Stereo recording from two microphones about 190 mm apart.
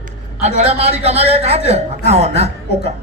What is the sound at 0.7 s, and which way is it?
A man's voice, 35° right (ahead or behind).